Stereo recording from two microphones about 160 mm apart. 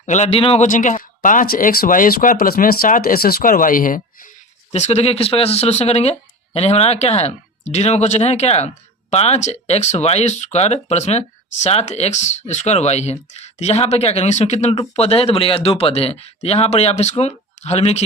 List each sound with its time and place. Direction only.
0.0 s speech: 45° left (ahead or behind)
4.7 s speech: 40° left (ahead or behind)